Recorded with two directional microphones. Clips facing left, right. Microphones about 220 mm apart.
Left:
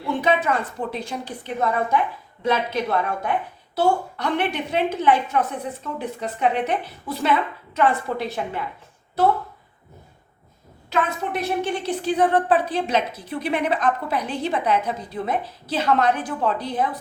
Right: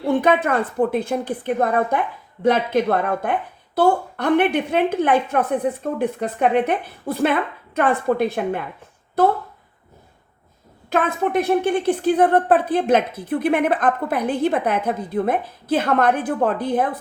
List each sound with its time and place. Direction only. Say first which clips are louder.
0.2 s a woman's voice: right 3 dB; 55° right (ahead or behind)
10.8 s a woman's voice: right 4 dB; 50° right (ahead or behind)